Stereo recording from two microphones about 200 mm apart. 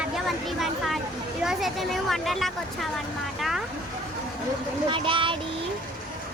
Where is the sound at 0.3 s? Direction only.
Centre (ahead or behind).